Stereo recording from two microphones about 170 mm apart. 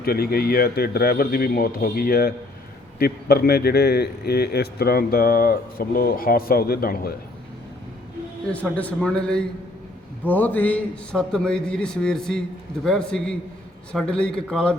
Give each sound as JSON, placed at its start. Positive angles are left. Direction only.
{"t": 0.0, "sound": "a man's voice", "side_deg": 65}
{"t": 8.5, "sound": "a man's voice", "side_deg": 10}